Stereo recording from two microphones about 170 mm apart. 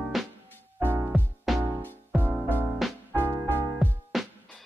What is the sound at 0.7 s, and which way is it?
Music, 10° right (ahead or behind).